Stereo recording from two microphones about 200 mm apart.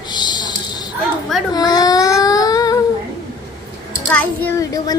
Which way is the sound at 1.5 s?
20° left (ahead or behind).